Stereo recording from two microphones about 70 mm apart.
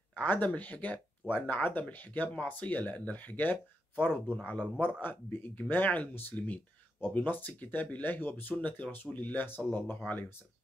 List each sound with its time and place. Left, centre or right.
0.1 s speech: left